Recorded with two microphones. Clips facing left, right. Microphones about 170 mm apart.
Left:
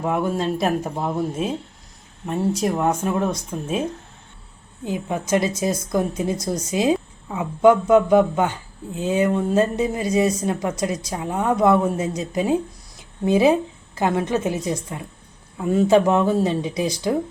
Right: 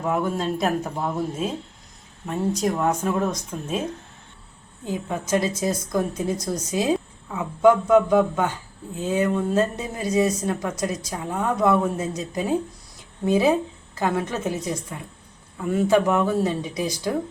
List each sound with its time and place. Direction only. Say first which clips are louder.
0.6 s speech: left 2 dB; 25° left (ahead or behind)
2.2 s speech: left 2 dB; 10° left (ahead or behind)
4.9 s speech: left 2 dB; 15° left (ahead or behind)